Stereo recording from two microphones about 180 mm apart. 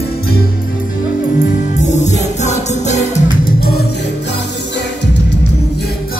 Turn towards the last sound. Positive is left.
turn(degrees=70)  # may be behind; listen again after turning